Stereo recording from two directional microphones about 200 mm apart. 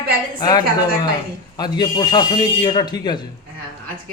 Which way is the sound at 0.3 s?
20° left (ahead or behind).